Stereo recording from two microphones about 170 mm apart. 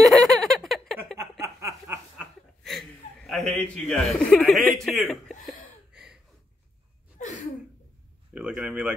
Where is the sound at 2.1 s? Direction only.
Centre (ahead or behind).